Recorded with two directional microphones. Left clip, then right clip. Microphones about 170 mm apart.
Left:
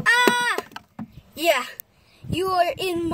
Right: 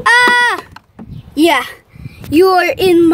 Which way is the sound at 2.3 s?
35° right (ahead or behind).